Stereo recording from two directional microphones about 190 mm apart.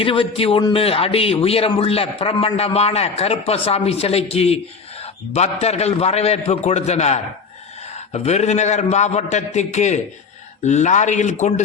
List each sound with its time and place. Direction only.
0.0 s a man's voice: 30° left (ahead or behind)